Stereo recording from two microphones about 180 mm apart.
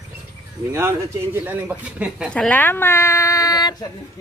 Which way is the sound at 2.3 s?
5° left (ahead or behind).